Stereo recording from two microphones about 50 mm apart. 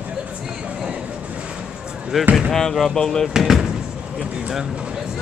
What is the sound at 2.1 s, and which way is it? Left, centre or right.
Speech, centre.